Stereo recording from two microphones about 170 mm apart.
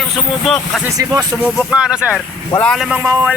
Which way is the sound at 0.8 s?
20° right (ahead or behind).